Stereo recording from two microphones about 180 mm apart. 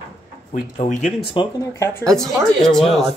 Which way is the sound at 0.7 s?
40° left (ahead or behind).